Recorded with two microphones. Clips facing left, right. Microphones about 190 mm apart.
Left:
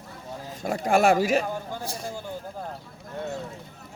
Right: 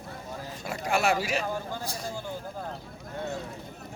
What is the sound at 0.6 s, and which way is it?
Speech, 50° left (ahead or behind).